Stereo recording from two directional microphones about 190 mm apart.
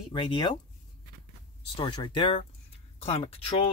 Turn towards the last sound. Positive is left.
turn(degrees=30)  # may be behind; listen again after turning